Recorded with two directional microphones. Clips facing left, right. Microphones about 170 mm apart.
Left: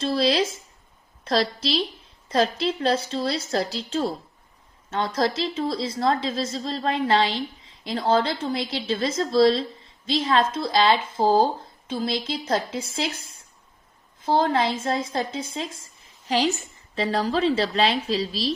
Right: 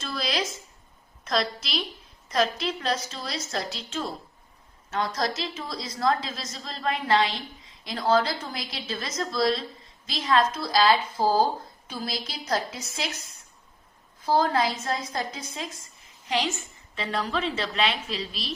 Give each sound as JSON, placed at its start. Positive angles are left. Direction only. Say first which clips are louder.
{"t": 0.0, "sound": "a woman's voice", "louder": "left 8 dB", "side_deg": 30}
{"t": 14.2, "sound": "a woman's voice", "louder": "left 2 dB", "side_deg": 25}